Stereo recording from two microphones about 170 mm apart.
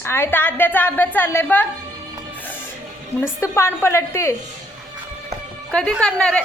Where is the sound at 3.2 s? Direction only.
15° left (ahead or behind).